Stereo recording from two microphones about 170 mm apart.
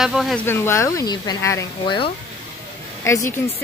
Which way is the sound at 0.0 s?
Centre (ahead or behind).